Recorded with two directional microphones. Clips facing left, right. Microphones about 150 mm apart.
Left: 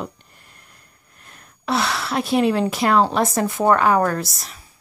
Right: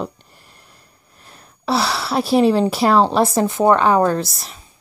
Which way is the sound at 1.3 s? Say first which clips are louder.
Right 3 dB; 35° right (ahead or behind).